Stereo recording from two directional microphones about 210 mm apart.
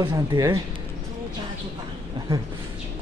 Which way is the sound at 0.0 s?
20° right (ahead or behind).